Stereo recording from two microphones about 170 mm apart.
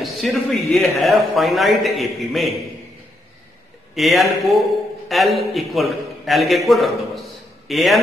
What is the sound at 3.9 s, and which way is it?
A man's voice, centre (ahead or behind).